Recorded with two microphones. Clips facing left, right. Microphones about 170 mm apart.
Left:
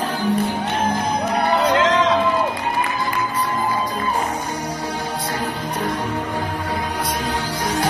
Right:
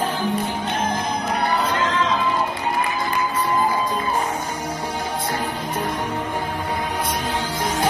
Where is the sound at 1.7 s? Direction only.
90° left.